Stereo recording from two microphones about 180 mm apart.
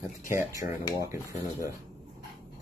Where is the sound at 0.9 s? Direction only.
15° right (ahead or behind).